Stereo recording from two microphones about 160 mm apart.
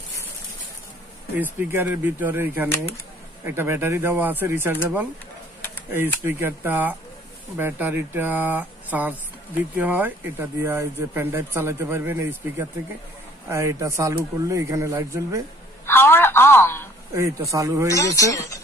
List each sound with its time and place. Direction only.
1.4 s a man's voice: 10° right (ahead or behind)
15.8 s telephone: 15° left (ahead or behind)
17.5 s a man's voice: 20° right (ahead or behind)
17.8 s speech: 20° left (ahead or behind)